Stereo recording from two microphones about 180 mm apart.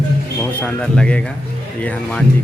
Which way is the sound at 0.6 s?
5° left (ahead or behind).